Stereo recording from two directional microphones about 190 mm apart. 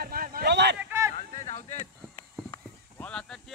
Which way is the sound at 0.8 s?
15° right (ahead or behind).